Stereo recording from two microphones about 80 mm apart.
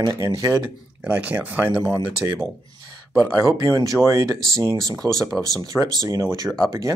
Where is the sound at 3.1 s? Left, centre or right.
Right.